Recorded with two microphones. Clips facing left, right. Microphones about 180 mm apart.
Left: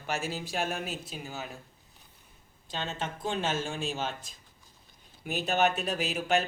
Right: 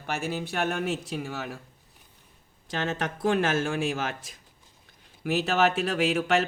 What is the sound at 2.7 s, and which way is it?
A man's voice, 90° right.